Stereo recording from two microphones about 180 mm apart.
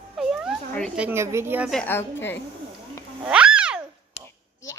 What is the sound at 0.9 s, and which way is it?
Speech, 10° right (ahead or behind).